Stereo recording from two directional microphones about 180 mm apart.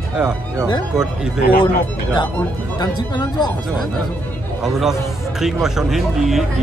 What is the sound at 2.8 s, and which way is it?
Speech, 25° left (ahead or behind).